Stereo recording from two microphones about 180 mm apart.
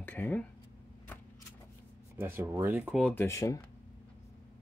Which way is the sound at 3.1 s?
15° left (ahead or behind).